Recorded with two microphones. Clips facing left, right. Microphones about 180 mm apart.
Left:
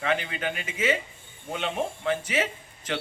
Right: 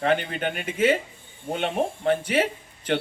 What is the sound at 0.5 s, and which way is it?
A man's voice, 60° right (ahead or behind).